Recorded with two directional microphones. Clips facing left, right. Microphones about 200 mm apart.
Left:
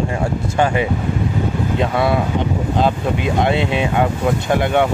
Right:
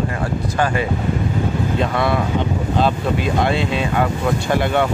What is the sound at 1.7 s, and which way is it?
Speech, 10° left (ahead or behind).